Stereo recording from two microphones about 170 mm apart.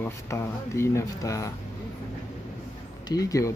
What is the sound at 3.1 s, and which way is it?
Speech, 20° left (ahead or behind).